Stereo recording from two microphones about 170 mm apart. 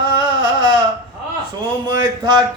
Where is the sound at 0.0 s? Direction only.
25° right (ahead or behind).